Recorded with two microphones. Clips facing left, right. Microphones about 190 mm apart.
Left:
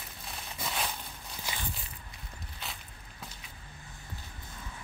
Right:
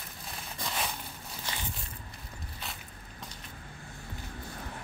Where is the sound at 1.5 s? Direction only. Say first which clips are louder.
Even; 10° left (ahead or behind).